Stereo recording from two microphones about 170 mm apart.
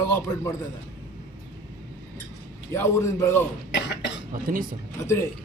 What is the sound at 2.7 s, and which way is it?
Speech, 15° left (ahead or behind).